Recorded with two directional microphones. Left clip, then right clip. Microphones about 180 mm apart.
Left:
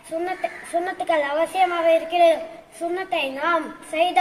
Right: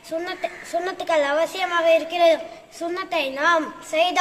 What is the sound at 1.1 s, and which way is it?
A woman's voice, 15° right (ahead or behind).